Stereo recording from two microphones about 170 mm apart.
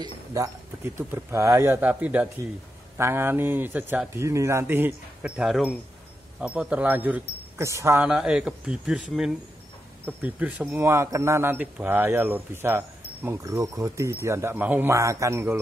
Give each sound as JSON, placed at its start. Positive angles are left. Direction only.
{"t": 0.0, "sound": "speech", "side_deg": -20}
{"t": 8.1, "sound": "speech", "side_deg": -5}
{"t": 10.0, "sound": "speech", "side_deg": -10}